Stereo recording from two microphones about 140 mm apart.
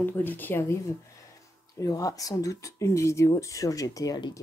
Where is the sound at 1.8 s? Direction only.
25° left (ahead or behind).